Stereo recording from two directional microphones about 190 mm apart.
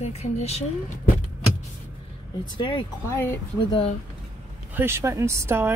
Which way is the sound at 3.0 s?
15° left (ahead or behind).